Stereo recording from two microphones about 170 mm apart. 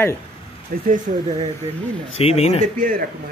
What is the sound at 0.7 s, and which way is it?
Speech, 55° right (ahead or behind).